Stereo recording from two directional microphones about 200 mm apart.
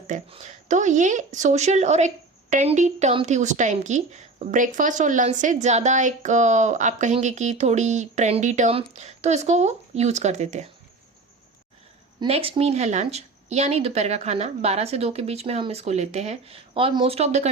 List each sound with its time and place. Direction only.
0.1 s speech: 35° right (ahead or behind)
12.2 s speech: 25° right (ahead or behind)